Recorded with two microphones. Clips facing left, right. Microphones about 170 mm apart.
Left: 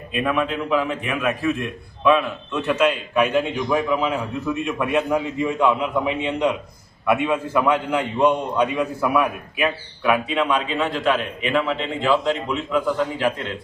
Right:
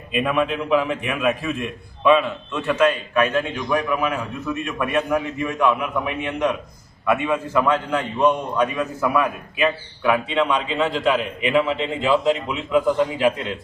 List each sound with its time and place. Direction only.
0.1 s a man's voice: centre (ahead or behind)
2.6 s a man's voice: 10° left (ahead or behind)
7.0 s a man's voice: 10° left (ahead or behind)
9.6 s a man's voice: 5° left (ahead or behind); by 13.3 s 10° right (ahead or behind)